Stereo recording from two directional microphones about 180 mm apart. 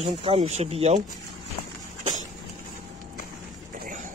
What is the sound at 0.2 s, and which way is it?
Speech, 35° right (ahead or behind).